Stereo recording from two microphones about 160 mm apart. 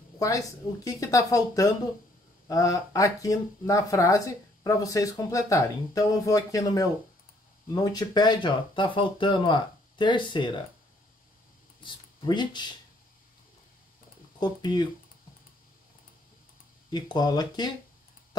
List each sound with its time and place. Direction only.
0.2 s speech: 20° left (ahead or behind)
11.8 s speech: 30° left (ahead or behind)
14.4 s speech: 25° left (ahead or behind)
16.9 s speech: 25° left (ahead or behind)